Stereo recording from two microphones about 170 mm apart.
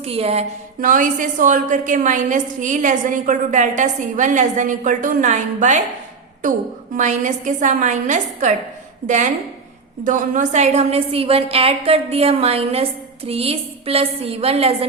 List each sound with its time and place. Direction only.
0.0 s a woman's voice: 35° right (ahead or behind)
0.8 s a woman's voice: 50° right (ahead or behind)
6.9 s a woman's voice: 50° right (ahead or behind)